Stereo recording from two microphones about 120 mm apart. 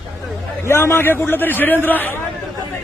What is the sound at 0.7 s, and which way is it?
A man's voice, 20° left (ahead or behind).